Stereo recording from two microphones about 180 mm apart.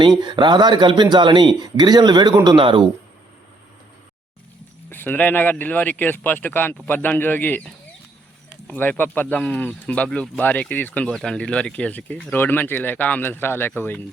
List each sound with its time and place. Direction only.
0.2 s speech: 25° right (ahead or behind)
4.9 s speech: 10° left (ahead or behind)